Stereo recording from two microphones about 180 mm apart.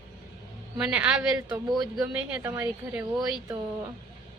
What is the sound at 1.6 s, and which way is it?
Speech, 25° right (ahead or behind).